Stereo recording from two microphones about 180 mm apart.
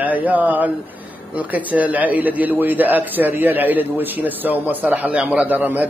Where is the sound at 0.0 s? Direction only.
10° right (ahead or behind).